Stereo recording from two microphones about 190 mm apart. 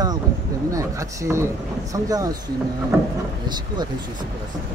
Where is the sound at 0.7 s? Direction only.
15° right (ahead or behind).